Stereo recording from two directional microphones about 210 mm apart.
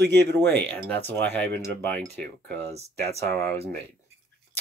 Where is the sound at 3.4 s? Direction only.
15° left (ahead or behind).